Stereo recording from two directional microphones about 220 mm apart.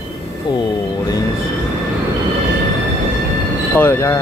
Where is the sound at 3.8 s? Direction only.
10° left (ahead or behind).